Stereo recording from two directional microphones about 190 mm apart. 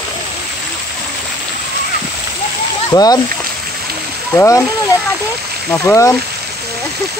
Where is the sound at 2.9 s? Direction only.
20° left (ahead or behind).